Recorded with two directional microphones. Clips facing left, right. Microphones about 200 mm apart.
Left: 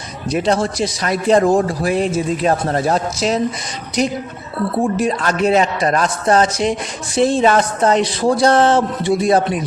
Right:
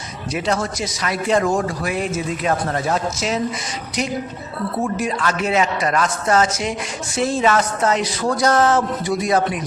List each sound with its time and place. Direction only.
0.3 s a man's voice: 35° left (ahead or behind)
4.8 s a man's voice: 35° left (ahead or behind)